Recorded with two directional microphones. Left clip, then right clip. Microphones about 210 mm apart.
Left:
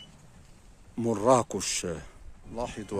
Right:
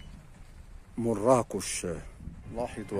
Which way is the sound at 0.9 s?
Centre (ahead or behind).